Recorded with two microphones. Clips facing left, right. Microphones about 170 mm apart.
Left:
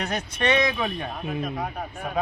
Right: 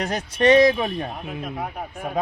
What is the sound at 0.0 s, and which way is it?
Speech, 40° right (ahead or behind).